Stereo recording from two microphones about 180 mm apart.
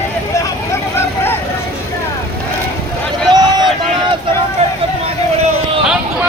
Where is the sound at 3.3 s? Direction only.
25° right (ahead or behind).